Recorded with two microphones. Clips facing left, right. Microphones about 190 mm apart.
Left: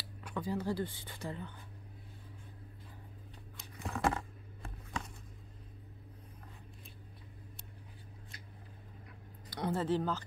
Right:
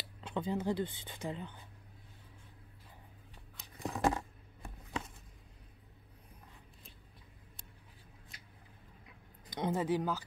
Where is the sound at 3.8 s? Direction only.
15° right (ahead or behind).